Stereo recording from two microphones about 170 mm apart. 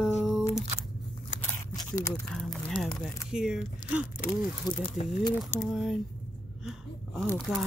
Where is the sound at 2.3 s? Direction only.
Centre (ahead or behind).